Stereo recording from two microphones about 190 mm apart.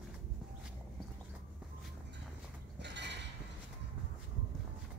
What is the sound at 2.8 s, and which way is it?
Mechanisms, 65° right (ahead or behind).